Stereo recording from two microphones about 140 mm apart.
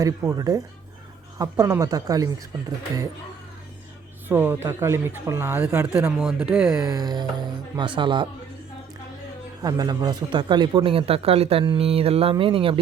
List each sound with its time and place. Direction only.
0.2 s a woman's voice: 25° right (ahead or behind)
4.3 s a woman's voice: 15° right (ahead or behind)
6.8 s a woman's voice: 25° right (ahead or behind)
9.6 s speech: 25° right (ahead or behind)